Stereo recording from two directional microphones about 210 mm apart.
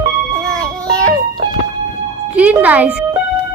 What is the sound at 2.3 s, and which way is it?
Speech, 5° right (ahead or behind).